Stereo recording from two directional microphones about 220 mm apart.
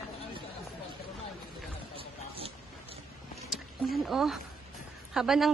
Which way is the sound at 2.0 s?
25° right (ahead or behind).